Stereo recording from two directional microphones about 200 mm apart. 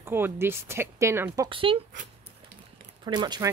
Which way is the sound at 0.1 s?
10° right (ahead or behind).